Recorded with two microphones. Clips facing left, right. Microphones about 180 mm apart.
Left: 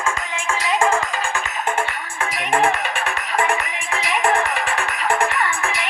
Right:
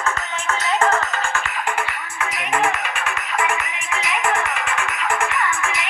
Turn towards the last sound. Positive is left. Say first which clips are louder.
# even
turn(degrees=35)  # may be behind; listen again after turning